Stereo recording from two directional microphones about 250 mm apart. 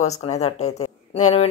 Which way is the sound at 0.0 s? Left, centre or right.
Left.